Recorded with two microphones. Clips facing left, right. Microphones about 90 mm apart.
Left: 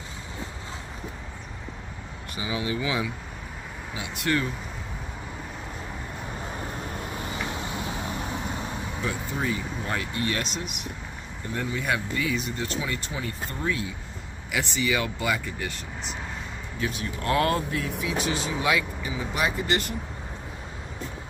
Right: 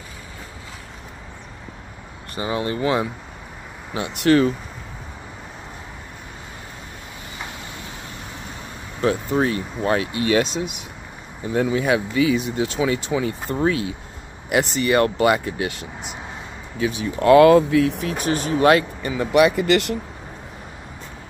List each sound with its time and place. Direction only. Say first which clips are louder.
2.3 s speech: right 5 dB; 45° right (ahead or behind)
3.9 s speech: right 10 dB; 70° right (ahead or behind); by 4.6 s 90° right
9.0 s speech: right 11 dB; 70° right (ahead or behind); by 10.4 s 90° right
11.4 s speech: right 9 dB; 90° right
14.8 s speech: right 9 dB; 55° right (ahead or behind); by 18.0 s 85° right
18.0 s speech: right 5 dB; 50° right (ahead or behind); by 20.0 s 75° right (ahead or behind)